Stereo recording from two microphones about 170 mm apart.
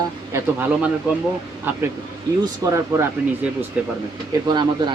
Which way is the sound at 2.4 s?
15° right (ahead or behind).